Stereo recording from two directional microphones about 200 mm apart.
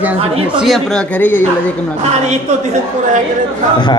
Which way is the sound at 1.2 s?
10° left (ahead or behind).